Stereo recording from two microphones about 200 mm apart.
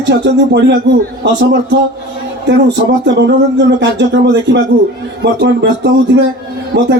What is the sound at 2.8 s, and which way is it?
Speech, 65° right (ahead or behind).